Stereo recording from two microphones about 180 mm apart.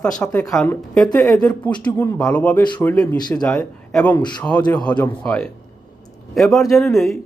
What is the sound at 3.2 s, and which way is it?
Speech, 25° left (ahead or behind).